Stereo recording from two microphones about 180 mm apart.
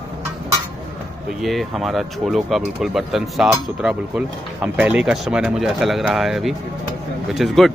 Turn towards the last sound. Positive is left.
turn(degrees=0)  # may be behind; listen again after turning